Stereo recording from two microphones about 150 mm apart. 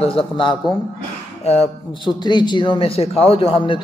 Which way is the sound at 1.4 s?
45° left (ahead or behind).